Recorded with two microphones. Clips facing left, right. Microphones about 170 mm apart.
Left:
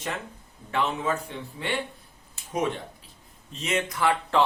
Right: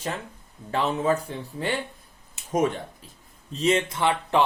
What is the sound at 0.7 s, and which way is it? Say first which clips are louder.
Speech: right 3 dB; 35° right (ahead or behind).